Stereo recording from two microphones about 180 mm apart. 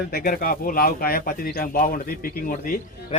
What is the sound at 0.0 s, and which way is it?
Speech, 55° left (ahead or behind).